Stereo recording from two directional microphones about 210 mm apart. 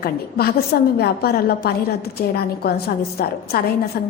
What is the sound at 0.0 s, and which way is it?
A woman's voice, 45° left (ahead or behind).